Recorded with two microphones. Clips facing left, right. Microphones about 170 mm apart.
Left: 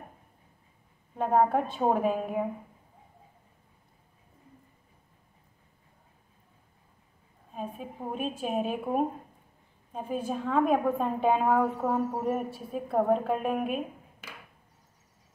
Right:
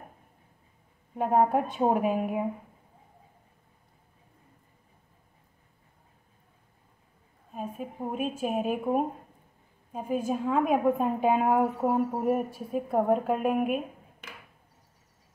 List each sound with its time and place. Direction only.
1.1 s a woman's voice: 10° right (ahead or behind)
7.5 s a woman's voice: 5° right (ahead or behind)